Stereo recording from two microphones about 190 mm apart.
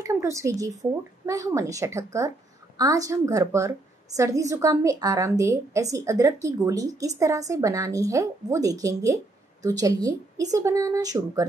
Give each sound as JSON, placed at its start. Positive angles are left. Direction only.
{"t": 0.0, "sound": "a woman's voice", "side_deg": -15}